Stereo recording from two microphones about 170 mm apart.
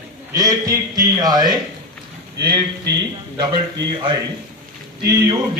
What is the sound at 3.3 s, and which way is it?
Speech, 25° right (ahead or behind).